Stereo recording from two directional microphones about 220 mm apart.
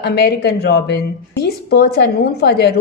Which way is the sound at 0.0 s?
50° left (ahead or behind).